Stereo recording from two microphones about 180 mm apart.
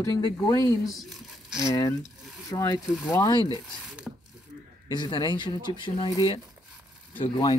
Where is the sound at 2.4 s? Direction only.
20° left (ahead or behind).